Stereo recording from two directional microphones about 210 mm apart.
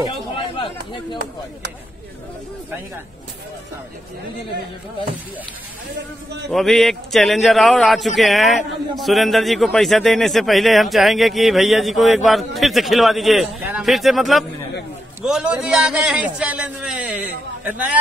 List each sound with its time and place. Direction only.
0.6 s chatter: 25° left (ahead or behind)
6.5 s a man's voice: centre (ahead or behind)